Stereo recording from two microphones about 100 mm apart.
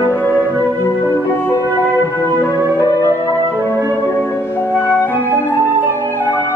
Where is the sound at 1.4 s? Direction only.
30° left (ahead or behind).